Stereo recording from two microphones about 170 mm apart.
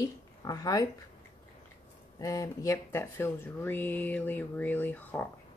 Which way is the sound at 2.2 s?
20° left (ahead or behind).